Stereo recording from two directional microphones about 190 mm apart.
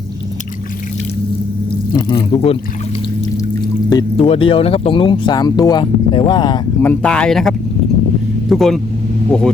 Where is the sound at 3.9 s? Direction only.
25° left (ahead or behind).